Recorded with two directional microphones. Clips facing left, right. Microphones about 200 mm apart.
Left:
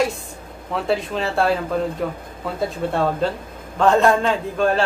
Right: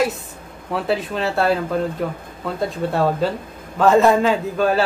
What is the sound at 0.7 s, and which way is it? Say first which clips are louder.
Speech: even; centre (ahead or behind).